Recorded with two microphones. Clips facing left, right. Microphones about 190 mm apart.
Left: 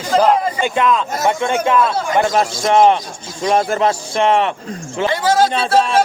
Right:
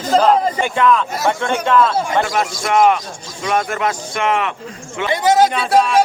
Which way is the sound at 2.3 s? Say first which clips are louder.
Left 3 dB; 35° left (ahead or behind).